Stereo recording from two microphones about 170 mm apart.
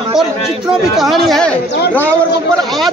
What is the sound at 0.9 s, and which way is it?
A man's voice, centre (ahead or behind).